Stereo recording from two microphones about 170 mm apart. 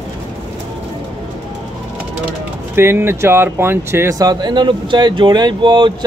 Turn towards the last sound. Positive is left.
turn(degrees=-25)  # may be behind; listen again after turning